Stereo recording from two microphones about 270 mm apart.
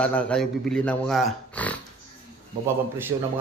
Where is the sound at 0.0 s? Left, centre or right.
Centre.